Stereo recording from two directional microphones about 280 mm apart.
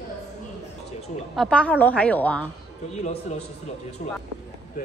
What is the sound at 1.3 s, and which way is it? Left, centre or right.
A woman's voice, centre.